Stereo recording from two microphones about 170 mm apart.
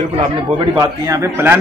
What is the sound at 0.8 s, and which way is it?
Speech, 20° right (ahead or behind).